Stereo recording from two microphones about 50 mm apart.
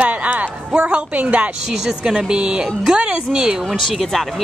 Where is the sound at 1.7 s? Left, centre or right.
Centre.